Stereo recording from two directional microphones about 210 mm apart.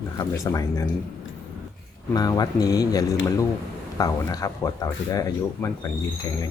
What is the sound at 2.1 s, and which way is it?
Speech, 20° left (ahead or behind).